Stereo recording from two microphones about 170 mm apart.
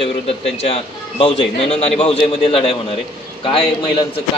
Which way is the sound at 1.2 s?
35° left (ahead or behind).